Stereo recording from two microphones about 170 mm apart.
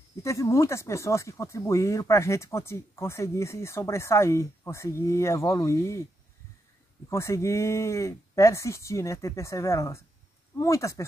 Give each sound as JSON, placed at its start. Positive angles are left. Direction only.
{"t": 0.2, "sound": "speech", "side_deg": 15}
{"t": 7.1, "sound": "speech", "side_deg": 15}